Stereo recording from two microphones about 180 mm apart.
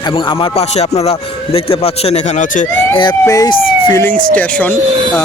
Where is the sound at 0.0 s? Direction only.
25° left (ahead or behind); by 2.6 s 45° left (ahead or behind).